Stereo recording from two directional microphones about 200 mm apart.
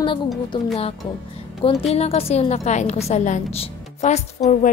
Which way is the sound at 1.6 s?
30° left (ahead or behind).